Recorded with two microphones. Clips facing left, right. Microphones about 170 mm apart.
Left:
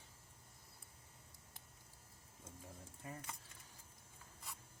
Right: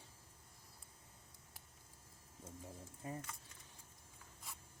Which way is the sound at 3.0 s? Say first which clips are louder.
Right 5 dB; 25° right (ahead or behind).